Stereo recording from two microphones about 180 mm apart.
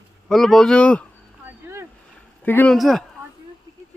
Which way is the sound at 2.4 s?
10° left (ahead or behind).